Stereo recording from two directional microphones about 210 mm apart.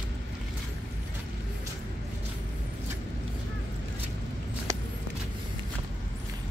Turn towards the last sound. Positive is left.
turn(degrees=-15)  # may be behind; listen again after turning